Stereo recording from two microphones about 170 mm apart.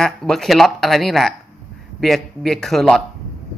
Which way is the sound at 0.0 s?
Centre (ahead or behind).